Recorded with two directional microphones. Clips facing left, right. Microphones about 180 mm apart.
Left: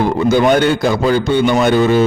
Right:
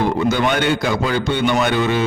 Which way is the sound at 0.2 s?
45° left (ahead or behind).